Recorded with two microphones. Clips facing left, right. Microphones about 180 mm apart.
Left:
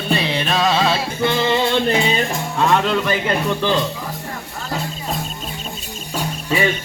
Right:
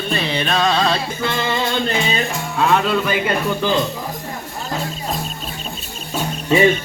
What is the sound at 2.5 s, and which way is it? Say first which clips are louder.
Speech: even; 5° right (ahead or behind).